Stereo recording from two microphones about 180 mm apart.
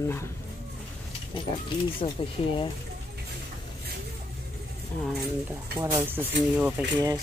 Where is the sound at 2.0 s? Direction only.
30° left (ahead or behind).